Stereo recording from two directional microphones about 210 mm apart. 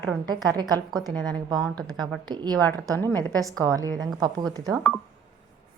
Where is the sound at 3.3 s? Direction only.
15° right (ahead or behind).